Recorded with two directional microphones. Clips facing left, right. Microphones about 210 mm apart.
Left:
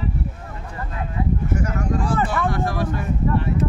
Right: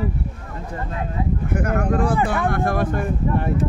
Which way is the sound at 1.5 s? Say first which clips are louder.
Right 7 dB; 55° right (ahead or behind).